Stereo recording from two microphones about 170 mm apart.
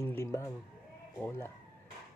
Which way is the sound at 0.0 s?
15° left (ahead or behind).